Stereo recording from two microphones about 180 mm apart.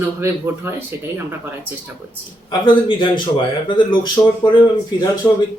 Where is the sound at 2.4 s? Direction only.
25° left (ahead or behind).